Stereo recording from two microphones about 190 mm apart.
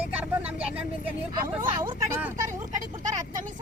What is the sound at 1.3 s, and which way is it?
Speech, 20° right (ahead or behind).